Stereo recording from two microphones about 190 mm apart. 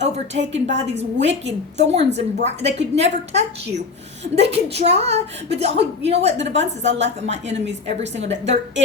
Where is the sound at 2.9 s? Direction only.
35° right (ahead or behind).